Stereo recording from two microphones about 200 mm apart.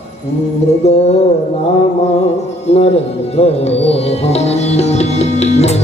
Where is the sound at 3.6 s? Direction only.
30° left (ahead or behind).